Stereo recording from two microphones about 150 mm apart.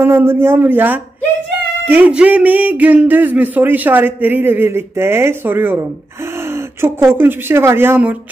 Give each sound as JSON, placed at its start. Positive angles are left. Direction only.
{"t": 0.0, "sound": "speech", "side_deg": -15}
{"t": 6.5, "sound": "a sound", "side_deg": -15}
{"t": 7.2, "sound": "speech", "side_deg": -15}